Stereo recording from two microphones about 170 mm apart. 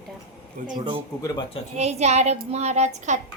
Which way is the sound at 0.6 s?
50° right (ahead or behind).